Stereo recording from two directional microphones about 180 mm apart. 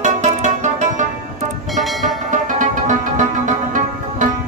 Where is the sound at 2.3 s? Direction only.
45° right (ahead or behind).